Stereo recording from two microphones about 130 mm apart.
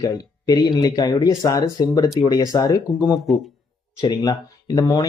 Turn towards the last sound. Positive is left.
turn(degrees=30)  # may be behind; listen again after turning